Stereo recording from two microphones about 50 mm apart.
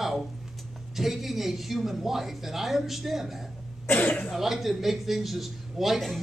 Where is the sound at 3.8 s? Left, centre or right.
Left.